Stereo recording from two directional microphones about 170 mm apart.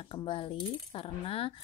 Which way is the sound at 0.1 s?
30° left (ahead or behind).